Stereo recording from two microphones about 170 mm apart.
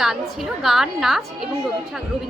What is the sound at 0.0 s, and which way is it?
A woman's voice, centre (ahead or behind).